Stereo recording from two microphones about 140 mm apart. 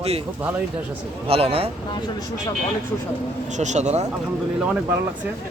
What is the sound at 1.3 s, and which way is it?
Speech, 45° right (ahead or behind).